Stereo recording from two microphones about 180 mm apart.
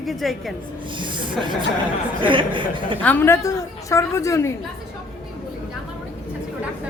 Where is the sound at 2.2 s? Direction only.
30° right (ahead or behind).